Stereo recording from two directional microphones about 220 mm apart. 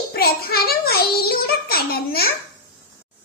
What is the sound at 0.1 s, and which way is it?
A child's voice, 45° left (ahead or behind).